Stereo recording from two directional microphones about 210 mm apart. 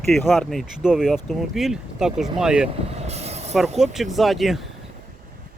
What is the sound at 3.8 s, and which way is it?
Speech, centre (ahead or behind).